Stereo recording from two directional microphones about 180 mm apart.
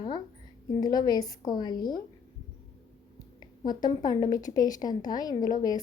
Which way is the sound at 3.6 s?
25° left (ahead or behind).